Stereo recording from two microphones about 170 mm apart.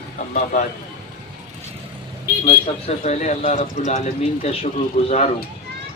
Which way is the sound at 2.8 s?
40° left (ahead or behind).